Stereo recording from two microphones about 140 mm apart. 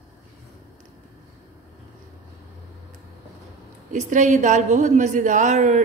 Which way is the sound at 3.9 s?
60° right (ahead or behind).